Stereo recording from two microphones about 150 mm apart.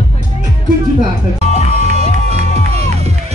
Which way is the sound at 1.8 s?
45° right (ahead or behind).